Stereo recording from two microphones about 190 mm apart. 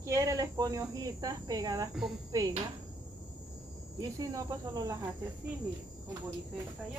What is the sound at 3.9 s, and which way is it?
Speech, 20° right (ahead or behind).